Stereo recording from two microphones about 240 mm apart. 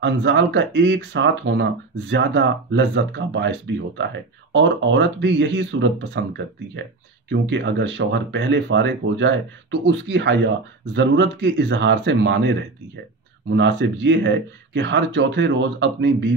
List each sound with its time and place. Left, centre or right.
0.0 s speech: right
13.6 s speech: right